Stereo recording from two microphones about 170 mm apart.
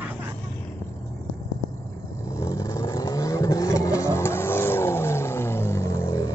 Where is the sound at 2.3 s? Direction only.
20° left (ahead or behind).